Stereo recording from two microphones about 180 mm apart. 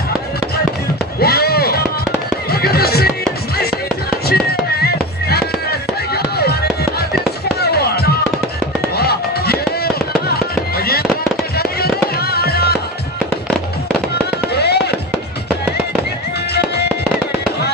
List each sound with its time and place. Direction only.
1.2 s fireworks: 60° left (ahead or behind)
2.5 s music: 60° left (ahead or behind)
4.3 s music: 60° left (ahead or behind)
7.6 s music: 60° left (ahead or behind)
10.8 s fireworks: 60° left (ahead or behind)
11.5 s music: 60° left (ahead or behind)
14.5 s fireworks: 65° left (ahead or behind)